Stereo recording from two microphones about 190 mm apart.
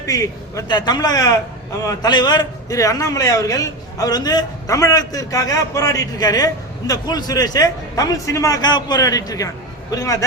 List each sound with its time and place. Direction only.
0.0 s a man's voice: 15° left (ahead or behind)